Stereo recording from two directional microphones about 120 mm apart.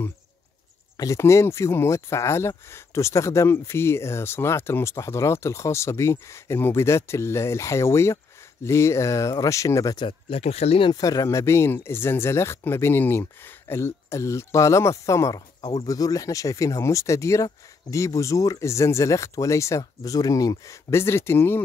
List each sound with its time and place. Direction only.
0.9 s speech: 25° left (ahead or behind)
10.0 s speech: 55° left (ahead or behind)
10.9 s speech: 30° left (ahead or behind)